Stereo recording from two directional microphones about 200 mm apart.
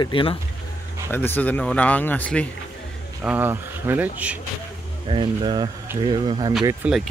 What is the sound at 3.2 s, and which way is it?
Speech, 10° right (ahead or behind).